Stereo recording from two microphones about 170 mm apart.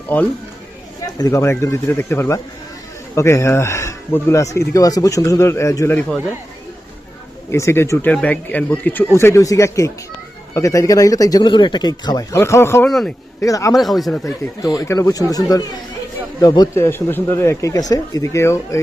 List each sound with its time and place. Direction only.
1.0 s speech: 20° left (ahead or behind)
7.5 s speech: 15° left (ahead or behind)
12.9 s speech: centre (ahead or behind)
13.4 s speech: 20° left (ahead or behind)
13.7 s speech: centre (ahead or behind)
14.3 s speech: 20° left (ahead or behind)